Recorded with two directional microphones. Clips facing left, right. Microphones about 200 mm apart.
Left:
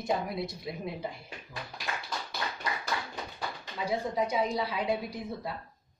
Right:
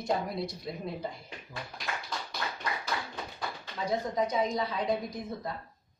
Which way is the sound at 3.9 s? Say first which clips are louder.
Even; 10° left (ahead or behind).